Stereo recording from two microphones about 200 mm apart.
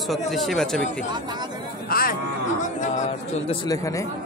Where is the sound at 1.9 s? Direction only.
45° left (ahead or behind).